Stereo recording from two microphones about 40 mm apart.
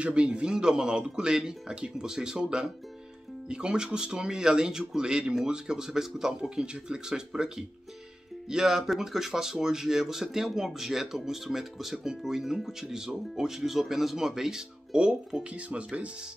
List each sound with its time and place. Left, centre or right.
0.0 s speech: right